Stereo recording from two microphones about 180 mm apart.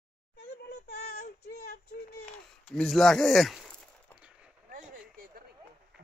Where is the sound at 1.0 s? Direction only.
45° left (ahead or behind).